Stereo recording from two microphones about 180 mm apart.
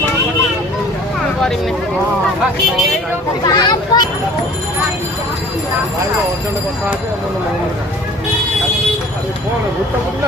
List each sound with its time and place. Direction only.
3.4 s speech: 20° left (ahead or behind)